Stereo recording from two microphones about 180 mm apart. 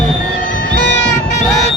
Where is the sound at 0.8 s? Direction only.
80° left.